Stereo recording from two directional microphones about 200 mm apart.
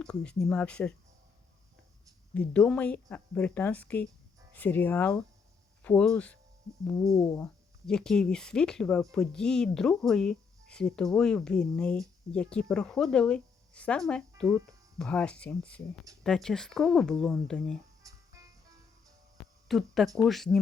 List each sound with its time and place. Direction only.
0.0 s speech: 5° left (ahead or behind)
2.3 s speech: 5° left (ahead or behind)
18.0 s music: 15° right (ahead or behind)
19.4 s a sound: centre (ahead or behind)
20.2 s speech: centre (ahead or behind)